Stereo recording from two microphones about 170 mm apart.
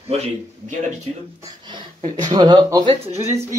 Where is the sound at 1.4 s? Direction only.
25° right (ahead or behind).